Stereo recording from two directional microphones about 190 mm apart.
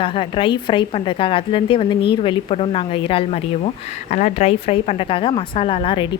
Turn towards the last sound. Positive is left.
turn(degrees=25)  # may be behind; listen again after turning